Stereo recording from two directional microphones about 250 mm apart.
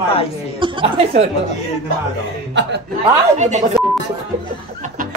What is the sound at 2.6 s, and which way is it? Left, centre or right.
Speech, right.